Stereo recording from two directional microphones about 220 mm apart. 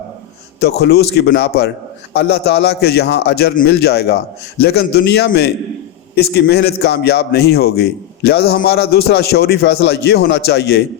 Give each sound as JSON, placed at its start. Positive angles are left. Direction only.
{"t": 0.6, "sound": "a man's voice", "side_deg": 45}